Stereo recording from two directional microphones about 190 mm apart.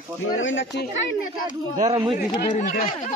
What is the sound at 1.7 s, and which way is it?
Speech, 40° right (ahead or behind).